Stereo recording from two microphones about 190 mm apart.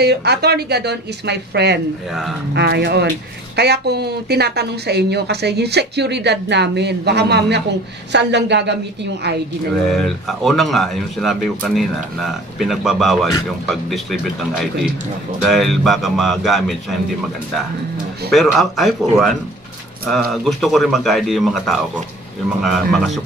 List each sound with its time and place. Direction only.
0.0 s a woman's voice: 60° right (ahead or behind)
9.8 s speech: centre (ahead or behind)
18.3 s speech: centre (ahead or behind)